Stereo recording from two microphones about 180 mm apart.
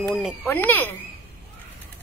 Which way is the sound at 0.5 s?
10° left (ahead or behind).